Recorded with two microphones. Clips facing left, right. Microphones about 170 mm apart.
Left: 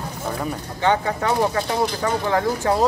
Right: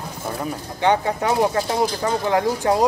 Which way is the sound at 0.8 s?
15° right (ahead or behind).